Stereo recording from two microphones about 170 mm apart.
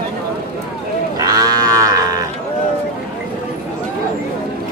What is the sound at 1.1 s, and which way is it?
Livestock, 20° right (ahead or behind).